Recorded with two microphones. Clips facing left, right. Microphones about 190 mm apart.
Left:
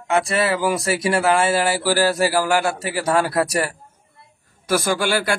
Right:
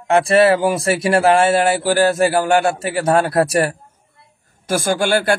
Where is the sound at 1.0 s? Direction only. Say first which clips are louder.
Right 5 dB; 25° right (ahead or behind).